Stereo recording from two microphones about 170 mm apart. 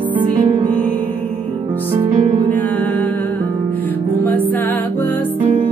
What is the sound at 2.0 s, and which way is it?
Music, 50° right (ahead or behind).